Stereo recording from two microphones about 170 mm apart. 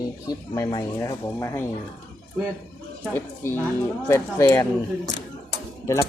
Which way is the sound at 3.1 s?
15° left (ahead or behind).